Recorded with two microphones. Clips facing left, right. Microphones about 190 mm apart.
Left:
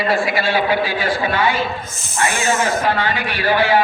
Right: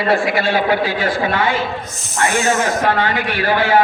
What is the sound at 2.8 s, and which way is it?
Speech, 50° right (ahead or behind).